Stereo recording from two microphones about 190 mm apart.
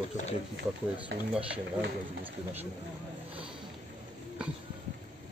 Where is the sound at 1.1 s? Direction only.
70° right (ahead or behind).